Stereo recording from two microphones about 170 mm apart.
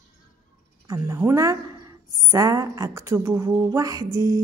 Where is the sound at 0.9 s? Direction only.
20° right (ahead or behind).